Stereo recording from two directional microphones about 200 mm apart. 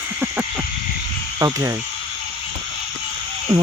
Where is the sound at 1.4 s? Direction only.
15° right (ahead or behind).